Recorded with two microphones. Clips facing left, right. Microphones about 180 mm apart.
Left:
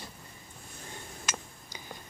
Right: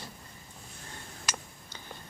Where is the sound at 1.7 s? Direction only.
10° left (ahead or behind).